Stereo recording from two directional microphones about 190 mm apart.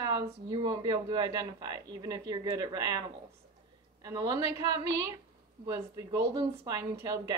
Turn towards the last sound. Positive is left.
turn(degrees=-20)  # may be behind; listen again after turning